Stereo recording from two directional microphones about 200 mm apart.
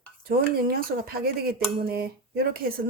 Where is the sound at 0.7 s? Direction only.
50° right (ahead or behind).